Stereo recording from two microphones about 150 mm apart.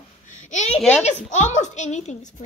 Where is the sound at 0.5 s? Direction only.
50° left (ahead or behind).